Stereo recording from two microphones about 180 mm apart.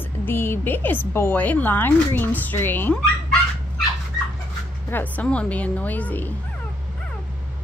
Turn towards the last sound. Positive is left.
turn(degrees=10)  # may be behind; listen again after turning